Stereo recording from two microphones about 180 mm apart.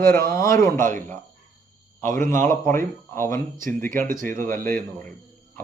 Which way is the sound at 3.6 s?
50° right (ahead or behind).